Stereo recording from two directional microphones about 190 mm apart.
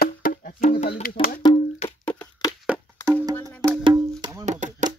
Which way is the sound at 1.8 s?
5° left (ahead or behind).